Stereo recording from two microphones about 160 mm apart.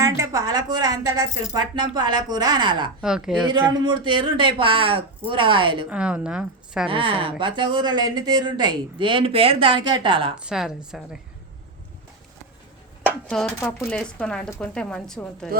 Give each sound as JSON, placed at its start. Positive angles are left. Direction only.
{"t": 0.0, "sound": "a woman's voice", "side_deg": -20}
{"t": 3.0, "sound": "speech", "side_deg": -5}
{"t": 3.4, "sound": "a woman's voice", "side_deg": -30}
{"t": 5.9, "sound": "a woman's voice", "side_deg": -5}
{"t": 6.8, "sound": "a woman's voice", "side_deg": -30}
{"t": 10.3, "sound": "speech", "side_deg": -5}
{"t": 13.2, "sound": "speech", "side_deg": 5}
{"t": 13.6, "sound": "speech", "side_deg": 15}